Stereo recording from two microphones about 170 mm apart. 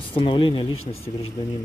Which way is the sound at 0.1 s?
30° left (ahead or behind).